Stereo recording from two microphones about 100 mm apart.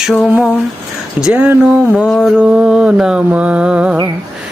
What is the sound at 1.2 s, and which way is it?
Mantra, 15° right (ahead or behind).